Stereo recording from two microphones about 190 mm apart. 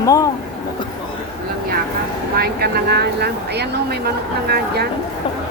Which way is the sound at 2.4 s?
55° right (ahead or behind).